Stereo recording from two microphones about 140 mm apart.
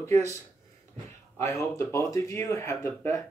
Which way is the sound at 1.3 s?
20° left (ahead or behind).